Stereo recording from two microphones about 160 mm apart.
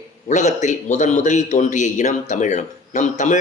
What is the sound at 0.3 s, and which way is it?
A man's voice, 50° left (ahead or behind).